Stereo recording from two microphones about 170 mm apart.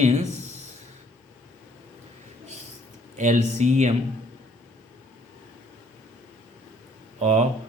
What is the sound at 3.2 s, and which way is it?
Speech, 45° right (ahead or behind).